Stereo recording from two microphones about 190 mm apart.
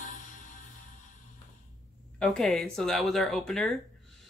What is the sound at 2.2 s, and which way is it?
Speech, centre (ahead or behind).